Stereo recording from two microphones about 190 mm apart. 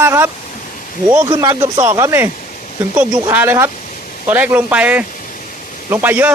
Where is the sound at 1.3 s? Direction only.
15° right (ahead or behind).